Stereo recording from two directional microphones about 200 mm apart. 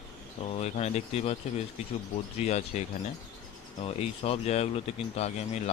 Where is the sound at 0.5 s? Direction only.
35° left (ahead or behind).